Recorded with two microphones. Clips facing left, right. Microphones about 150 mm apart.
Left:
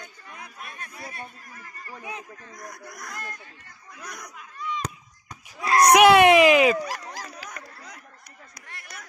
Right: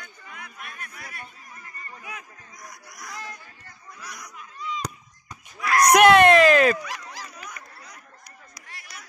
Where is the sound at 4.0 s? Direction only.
50° left (ahead or behind).